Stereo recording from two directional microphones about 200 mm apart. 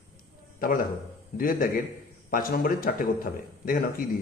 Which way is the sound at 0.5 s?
45° left (ahead or behind).